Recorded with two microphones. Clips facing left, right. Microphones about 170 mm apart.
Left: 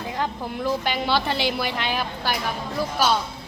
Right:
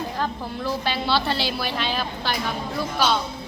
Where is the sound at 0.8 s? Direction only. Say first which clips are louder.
Even; 15° left (ahead or behind).